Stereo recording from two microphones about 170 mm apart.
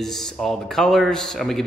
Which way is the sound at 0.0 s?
Centre (ahead or behind).